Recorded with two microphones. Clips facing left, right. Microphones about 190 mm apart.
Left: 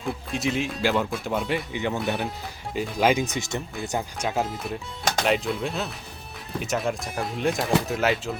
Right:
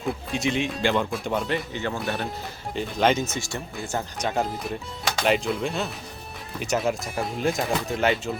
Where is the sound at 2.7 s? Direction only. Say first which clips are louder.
Even; 10° left (ahead or behind).